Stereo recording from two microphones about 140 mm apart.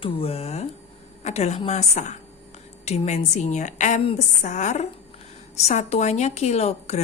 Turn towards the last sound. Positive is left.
turn(degrees=50)  # may be behind; listen again after turning